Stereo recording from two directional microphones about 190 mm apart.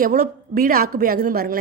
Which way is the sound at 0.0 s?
50° right (ahead or behind).